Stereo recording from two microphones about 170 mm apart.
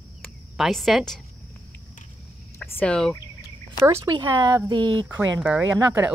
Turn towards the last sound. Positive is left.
turn(degrees=-15)  # may be behind; listen again after turning